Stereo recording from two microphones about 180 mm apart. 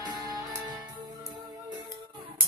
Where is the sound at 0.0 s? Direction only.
20° right (ahead or behind).